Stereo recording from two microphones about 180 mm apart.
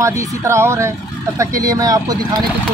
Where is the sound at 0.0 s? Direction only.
15° right (ahead or behind).